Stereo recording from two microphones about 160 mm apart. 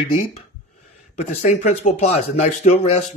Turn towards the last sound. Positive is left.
turn(degrees=45)  # may be behind; listen again after turning